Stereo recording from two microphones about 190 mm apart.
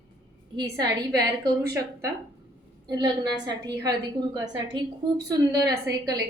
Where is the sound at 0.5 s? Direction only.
20° right (ahead or behind).